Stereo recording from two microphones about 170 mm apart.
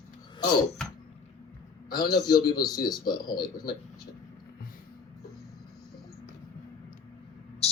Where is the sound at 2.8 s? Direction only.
25° left (ahead or behind).